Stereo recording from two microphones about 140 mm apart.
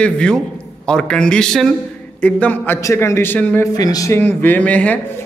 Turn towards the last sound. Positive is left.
turn(degrees=10)  # may be behind; listen again after turning